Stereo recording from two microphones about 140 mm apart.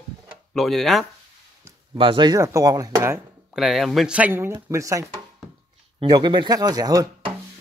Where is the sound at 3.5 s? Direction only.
Centre (ahead or behind); by 5.0 s 20° right (ahead or behind).